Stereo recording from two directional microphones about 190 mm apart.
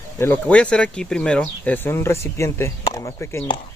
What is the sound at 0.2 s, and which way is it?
Speech, 10° left (ahead or behind).